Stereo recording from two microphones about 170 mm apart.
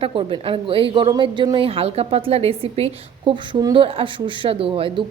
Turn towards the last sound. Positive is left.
turn(degrees=-30)  # may be behind; listen again after turning